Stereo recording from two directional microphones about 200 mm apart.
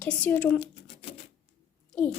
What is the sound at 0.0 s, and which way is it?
Speech, 5° left (ahead or behind).